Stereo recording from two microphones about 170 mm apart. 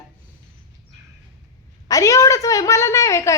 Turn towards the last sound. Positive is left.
turn(degrees=15)  # may be behind; listen again after turning